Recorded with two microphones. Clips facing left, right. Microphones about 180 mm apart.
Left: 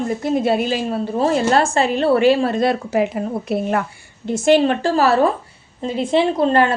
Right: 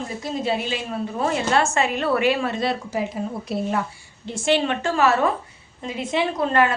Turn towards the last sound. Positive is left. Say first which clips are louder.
# left 5 dB
turn(degrees=30)  # may be behind; listen again after turning